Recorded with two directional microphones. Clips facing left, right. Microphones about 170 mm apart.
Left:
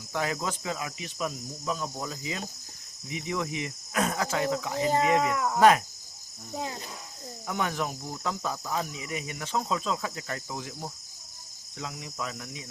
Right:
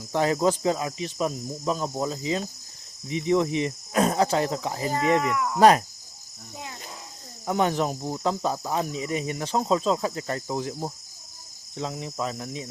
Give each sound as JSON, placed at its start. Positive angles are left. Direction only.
{"t": 0.1, "sound": "cricket", "side_deg": -35}
{"t": 5.2, "sound": "speech", "side_deg": 30}
{"t": 5.5, "sound": "cricket", "side_deg": -35}
{"t": 7.4, "sound": "cricket", "side_deg": -30}